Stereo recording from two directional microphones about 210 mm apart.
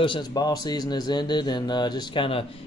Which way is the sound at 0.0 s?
20° left (ahead or behind).